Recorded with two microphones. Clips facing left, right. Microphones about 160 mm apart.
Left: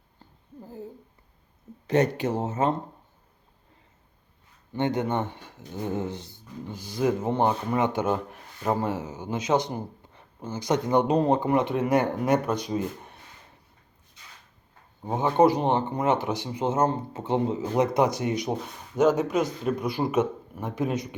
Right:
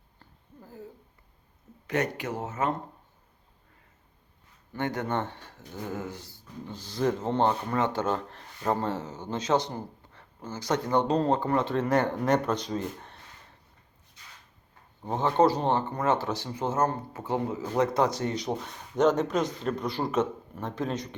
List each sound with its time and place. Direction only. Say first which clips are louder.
0.2 s a sound: left 6 dB; 25° left (ahead or behind)
1.9 s speech: left 6 dB; 30° left (ahead or behind)
4.7 s speech: left 4 dB; 20° left (ahead or behind)
15.0 s speech: left 3 dB; 15° left (ahead or behind)